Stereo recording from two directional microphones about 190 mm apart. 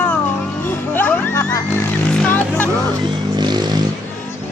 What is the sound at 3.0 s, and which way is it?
Vehicle, 25° right (ahead or behind).